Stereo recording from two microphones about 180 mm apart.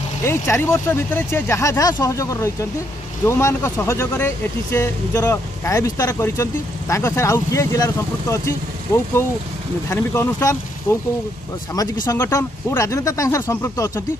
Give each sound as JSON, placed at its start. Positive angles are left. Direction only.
{"t": 0.2, "sound": "speech", "side_deg": 15}
{"t": 12.1, "sound": "speech", "side_deg": 15}